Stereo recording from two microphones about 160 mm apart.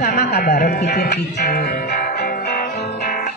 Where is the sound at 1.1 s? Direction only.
85° left.